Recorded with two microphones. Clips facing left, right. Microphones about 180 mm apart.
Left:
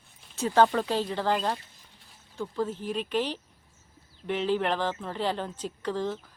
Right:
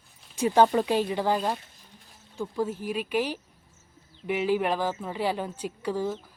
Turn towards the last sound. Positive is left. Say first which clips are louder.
# right 1 dB
turn(degrees=-10)  # may be behind; listen again after turning